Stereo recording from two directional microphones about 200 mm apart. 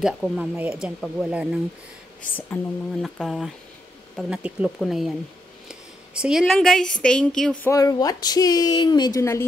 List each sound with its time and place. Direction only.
0.0 s speech: 5° right (ahead or behind)
2.3 s speech: 5° left (ahead or behind)
7.7 s a woman's voice: 20° left (ahead or behind)